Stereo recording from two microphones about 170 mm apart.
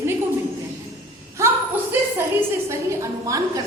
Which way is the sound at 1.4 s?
15° right (ahead or behind).